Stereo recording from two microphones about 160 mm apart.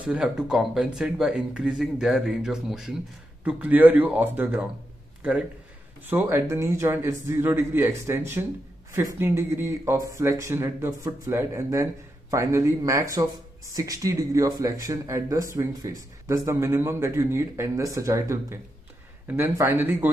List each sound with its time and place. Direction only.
0.0 s speech: 5° right (ahead or behind)
6.0 s speech: 15° right (ahead or behind)